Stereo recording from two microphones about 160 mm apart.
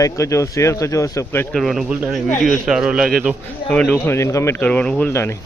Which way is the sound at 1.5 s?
Centre (ahead or behind).